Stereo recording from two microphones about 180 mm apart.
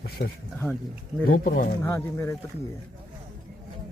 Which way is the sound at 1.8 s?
15° left (ahead or behind).